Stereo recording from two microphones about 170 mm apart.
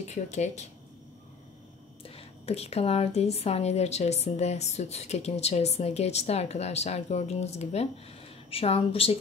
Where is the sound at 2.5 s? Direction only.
35° left (ahead or behind).